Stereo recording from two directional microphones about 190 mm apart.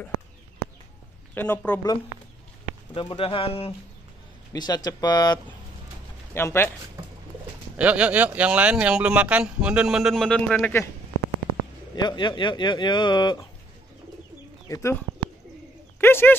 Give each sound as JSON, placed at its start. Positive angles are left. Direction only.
{"t": 1.3, "sound": "a man's voice", "side_deg": 10}
{"t": 2.9, "sound": "a man's voice", "side_deg": 30}
{"t": 7.7, "sound": "speech", "side_deg": -5}
{"t": 11.9, "sound": "speech", "side_deg": 20}
{"t": 14.7, "sound": "a man's voice", "side_deg": 15}